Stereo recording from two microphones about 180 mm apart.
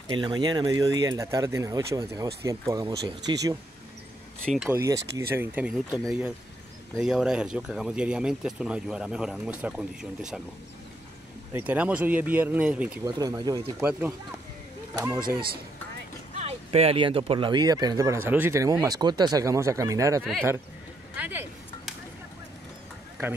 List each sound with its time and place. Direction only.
0.1 s speech: 25° right (ahead or behind)
4.6 s speech: 15° right (ahead or behind)
11.5 s speech: 10° right (ahead or behind)
13.0 s speech: 20° right (ahead or behind)
16.3 s speech: 35° right (ahead or behind); by 20.2 s 15° right (ahead or behind)
21.2 s a sound: 10° right (ahead or behind)